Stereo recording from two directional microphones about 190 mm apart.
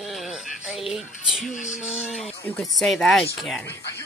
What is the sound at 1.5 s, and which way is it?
Music, 40° left (ahead or behind).